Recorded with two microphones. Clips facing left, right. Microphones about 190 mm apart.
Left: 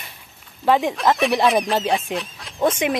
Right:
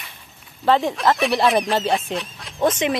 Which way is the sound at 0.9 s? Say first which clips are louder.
Left 1 dB; centre (ahead or behind).